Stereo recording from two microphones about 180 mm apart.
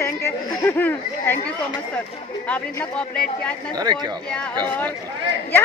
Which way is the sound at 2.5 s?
5° left (ahead or behind).